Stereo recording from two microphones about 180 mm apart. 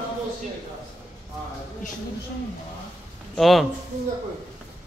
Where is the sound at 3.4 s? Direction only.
Centre (ahead or behind).